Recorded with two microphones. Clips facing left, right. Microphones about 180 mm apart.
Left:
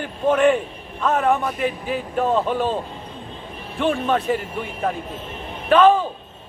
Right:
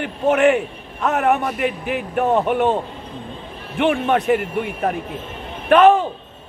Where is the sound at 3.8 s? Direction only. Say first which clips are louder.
Right 3 dB; 70° right (ahead or behind).